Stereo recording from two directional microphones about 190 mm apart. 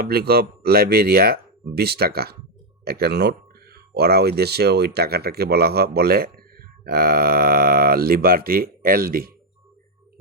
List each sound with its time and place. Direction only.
0.0 s speech: 55° right (ahead or behind)